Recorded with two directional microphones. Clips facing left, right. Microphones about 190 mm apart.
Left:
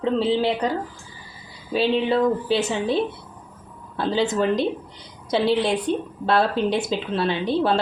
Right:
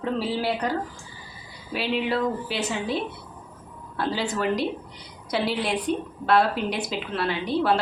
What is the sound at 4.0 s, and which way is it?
A woman's voice, 25° left (ahead or behind).